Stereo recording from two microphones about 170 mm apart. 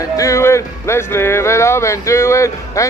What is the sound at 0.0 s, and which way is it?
Speech, 15° left (ahead or behind).